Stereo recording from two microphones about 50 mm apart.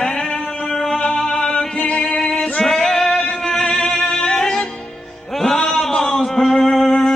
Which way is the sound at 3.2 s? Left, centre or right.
Centre.